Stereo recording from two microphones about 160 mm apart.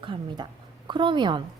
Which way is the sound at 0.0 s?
30° right (ahead or behind).